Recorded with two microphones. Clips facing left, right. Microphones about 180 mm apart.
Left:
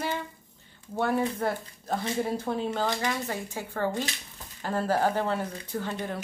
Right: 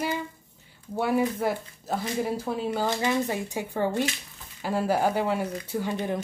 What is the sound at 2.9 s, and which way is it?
Speech, 20° right (ahead or behind).